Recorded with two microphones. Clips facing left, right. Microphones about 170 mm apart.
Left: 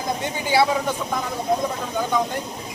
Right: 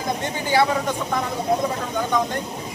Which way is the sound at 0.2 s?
10° left (ahead or behind).